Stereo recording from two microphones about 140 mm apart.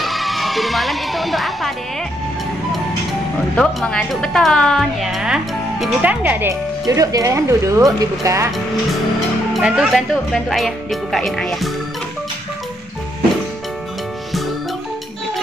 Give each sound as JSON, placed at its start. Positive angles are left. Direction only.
{"t": 0.0, "sound": "speech", "side_deg": 0}
{"t": 3.5, "sound": "a woman's voice", "side_deg": 5}
{"t": 6.0, "sound": "speech", "side_deg": -10}
{"t": 6.9, "sound": "speech", "side_deg": -25}
{"t": 9.5, "sound": "a woman's voice", "side_deg": 0}